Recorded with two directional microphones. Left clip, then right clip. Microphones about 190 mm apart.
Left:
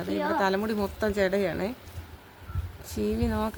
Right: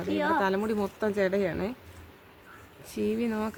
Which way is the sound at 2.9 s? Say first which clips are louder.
Left 1 dB; 5° right (ahead or behind).